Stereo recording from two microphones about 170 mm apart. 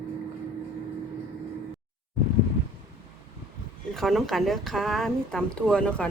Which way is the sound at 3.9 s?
Centre (ahead or behind).